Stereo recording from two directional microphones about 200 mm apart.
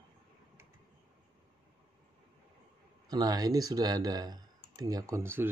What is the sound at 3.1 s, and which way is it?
Speech, 20° right (ahead or behind).